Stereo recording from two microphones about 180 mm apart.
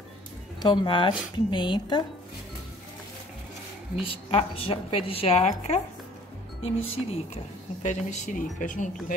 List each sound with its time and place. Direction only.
0.6 s a woman's voice: 25° left (ahead or behind)
4.0 s a woman's voice: 30° left (ahead or behind)